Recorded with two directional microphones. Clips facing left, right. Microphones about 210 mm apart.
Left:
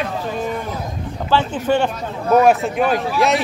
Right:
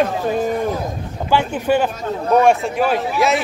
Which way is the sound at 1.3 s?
10° right (ahead or behind).